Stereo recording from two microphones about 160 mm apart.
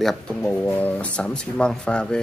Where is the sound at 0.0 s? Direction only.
5° left (ahead or behind).